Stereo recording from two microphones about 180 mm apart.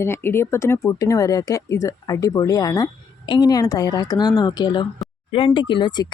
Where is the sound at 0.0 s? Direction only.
15° left (ahead or behind).